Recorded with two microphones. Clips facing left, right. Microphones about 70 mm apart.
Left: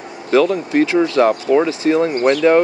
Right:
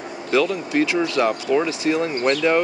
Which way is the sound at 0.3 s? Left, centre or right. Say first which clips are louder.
Left 6 dB; left.